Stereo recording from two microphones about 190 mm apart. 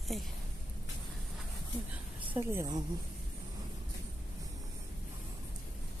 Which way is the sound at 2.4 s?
15° right (ahead or behind).